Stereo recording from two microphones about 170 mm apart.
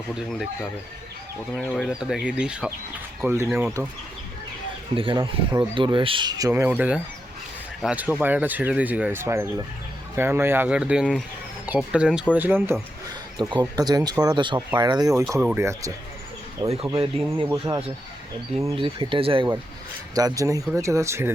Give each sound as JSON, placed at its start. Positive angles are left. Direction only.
{"t": 0.1, "sound": "speech", "side_deg": 0}
{"t": 3.2, "sound": "speech", "side_deg": -15}
{"t": 4.9, "sound": "speech", "side_deg": -30}
{"t": 13.4, "sound": "speech", "side_deg": -25}
{"t": 17.0, "sound": "speech", "side_deg": -35}
{"t": 18.8, "sound": "speech", "side_deg": -30}
{"t": 20.1, "sound": "speech", "side_deg": -20}